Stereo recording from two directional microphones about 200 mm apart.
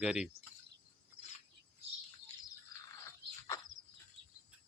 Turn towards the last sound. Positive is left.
turn(degrees=-65)  # may be behind; listen again after turning